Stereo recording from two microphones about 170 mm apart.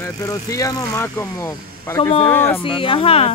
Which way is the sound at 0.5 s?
20° left (ahead or behind).